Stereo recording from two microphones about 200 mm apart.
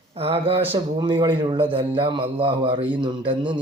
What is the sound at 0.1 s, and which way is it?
Speech, 30° right (ahead or behind).